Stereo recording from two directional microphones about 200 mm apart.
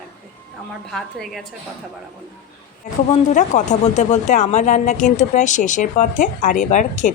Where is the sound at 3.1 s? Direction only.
35° left (ahead or behind).